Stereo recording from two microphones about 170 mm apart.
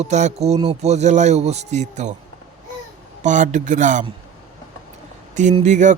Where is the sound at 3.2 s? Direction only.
45° right (ahead or behind).